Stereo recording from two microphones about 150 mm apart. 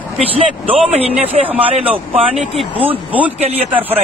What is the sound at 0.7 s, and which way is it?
Speech, 40° right (ahead or behind).